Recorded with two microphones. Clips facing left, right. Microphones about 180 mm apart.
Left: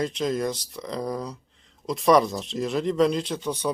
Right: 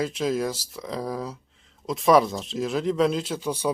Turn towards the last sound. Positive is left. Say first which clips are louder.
# right 1 dB
turn(degrees=-10)  # may be behind; listen again after turning